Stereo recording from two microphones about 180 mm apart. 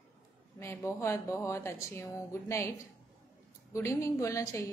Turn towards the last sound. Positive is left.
turn(degrees=15)  # may be behind; listen again after turning